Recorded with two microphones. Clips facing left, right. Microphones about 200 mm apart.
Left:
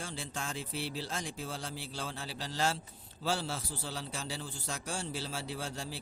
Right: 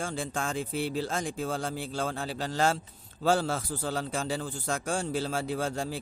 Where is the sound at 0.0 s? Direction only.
50° right (ahead or behind).